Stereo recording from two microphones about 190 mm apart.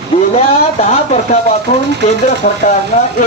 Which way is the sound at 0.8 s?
40° left (ahead or behind).